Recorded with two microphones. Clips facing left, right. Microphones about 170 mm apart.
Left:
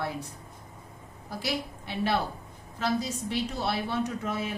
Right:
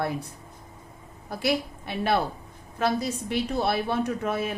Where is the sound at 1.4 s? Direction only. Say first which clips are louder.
Right 7 dB; 60° right (ahead or behind).